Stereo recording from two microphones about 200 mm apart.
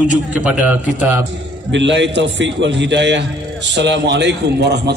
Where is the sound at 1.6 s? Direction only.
65° right (ahead or behind).